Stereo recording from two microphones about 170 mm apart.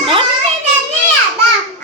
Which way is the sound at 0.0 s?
35° right (ahead or behind).